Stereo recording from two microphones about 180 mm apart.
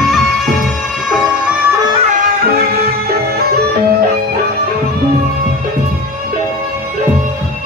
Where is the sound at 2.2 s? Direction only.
55° right (ahead or behind).